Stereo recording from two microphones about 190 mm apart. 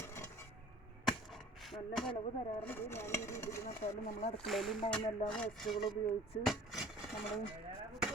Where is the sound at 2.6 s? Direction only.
10° left (ahead or behind).